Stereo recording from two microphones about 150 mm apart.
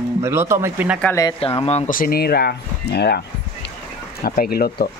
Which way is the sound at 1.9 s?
80° left.